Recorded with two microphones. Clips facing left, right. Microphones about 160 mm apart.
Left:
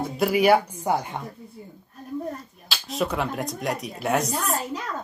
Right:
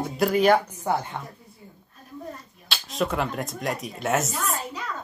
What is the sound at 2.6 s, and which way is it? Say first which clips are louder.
Dishes: even; centre (ahead or behind).